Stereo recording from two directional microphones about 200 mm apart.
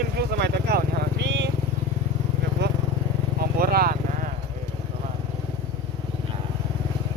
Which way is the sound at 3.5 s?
50° right (ahead or behind).